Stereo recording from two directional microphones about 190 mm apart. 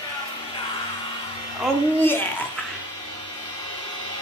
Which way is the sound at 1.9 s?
10° left (ahead or behind).